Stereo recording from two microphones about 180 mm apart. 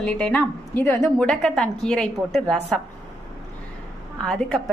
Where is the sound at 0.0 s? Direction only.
5° left (ahead or behind).